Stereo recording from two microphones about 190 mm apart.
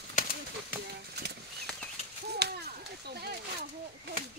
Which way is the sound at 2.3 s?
60° right (ahead or behind).